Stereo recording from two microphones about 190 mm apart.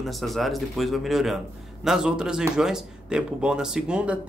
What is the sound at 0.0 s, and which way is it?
Speech, centre (ahead or behind).